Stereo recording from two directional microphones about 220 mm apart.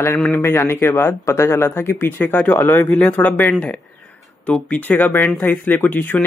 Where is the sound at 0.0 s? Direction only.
10° left (ahead or behind).